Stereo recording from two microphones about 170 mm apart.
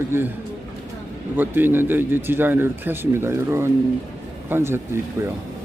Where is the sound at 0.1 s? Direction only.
15° right (ahead or behind).